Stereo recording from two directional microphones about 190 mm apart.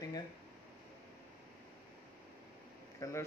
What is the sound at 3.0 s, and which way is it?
Speech, 15° left (ahead or behind).